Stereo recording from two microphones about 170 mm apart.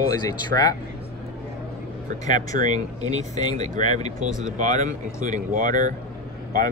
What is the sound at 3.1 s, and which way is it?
Speech, 45° right (ahead or behind).